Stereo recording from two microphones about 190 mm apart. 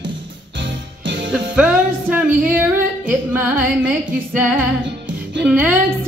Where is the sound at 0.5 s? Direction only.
70° right (ahead or behind).